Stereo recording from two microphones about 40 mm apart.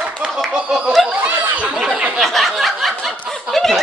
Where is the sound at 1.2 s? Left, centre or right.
Right.